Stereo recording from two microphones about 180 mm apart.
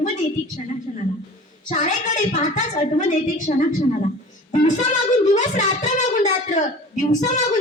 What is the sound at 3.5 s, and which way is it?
A woman's voice, 45° left (ahead or behind).